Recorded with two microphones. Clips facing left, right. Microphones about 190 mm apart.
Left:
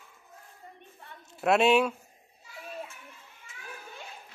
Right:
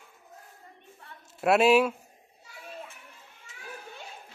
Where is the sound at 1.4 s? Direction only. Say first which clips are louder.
Right 2 dB; 5° right (ahead or behind).